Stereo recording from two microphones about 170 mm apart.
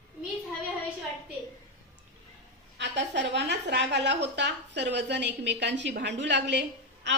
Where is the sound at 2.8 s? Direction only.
90° right.